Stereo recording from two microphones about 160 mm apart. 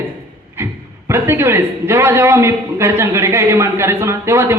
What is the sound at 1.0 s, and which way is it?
A man's voice, 15° right (ahead or behind).